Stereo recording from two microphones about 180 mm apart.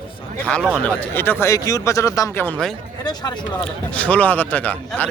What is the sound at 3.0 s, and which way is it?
Speech, 25° left (ahead or behind).